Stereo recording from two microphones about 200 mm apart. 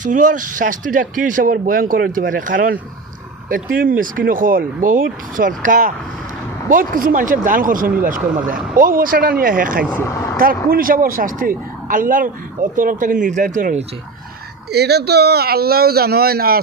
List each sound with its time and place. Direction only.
0.0 s speech: 40° right (ahead or behind)
10.0 s speech: 15° left (ahead or behind)
10.3 s speech: 45° right (ahead or behind)
14.7 s speech: 55° right (ahead or behind)